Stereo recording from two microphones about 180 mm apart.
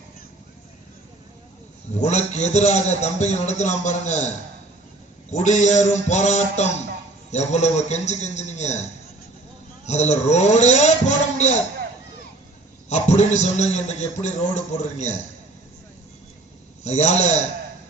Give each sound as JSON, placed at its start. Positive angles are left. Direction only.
{"t": 1.9, "sound": "a man's voice", "side_deg": 40}
{"t": 5.3, "sound": "a man's voice", "side_deg": 40}
{"t": 12.9, "sound": "a man's voice", "side_deg": 40}
{"t": 16.8, "sound": "a man's voice", "side_deg": 40}